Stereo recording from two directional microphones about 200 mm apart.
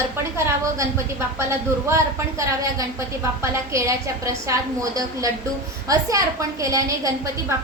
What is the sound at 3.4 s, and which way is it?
A woman's voice, 15° right (ahead or behind).